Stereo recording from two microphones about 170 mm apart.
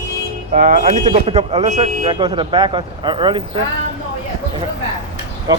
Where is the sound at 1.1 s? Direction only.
35° right (ahead or behind).